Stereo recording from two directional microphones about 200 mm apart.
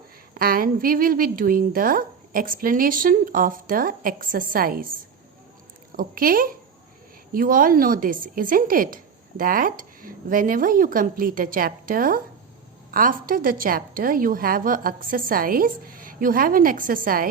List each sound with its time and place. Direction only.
0.3 s a woman's voice: 45° right (ahead or behind)
6.0 s a woman's voice: 45° right (ahead or behind)